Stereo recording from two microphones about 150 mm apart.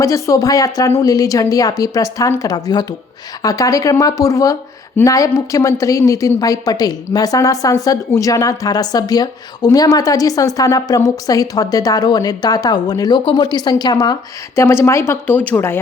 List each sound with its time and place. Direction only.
0.0 s a woman's voice: 20° left (ahead or behind)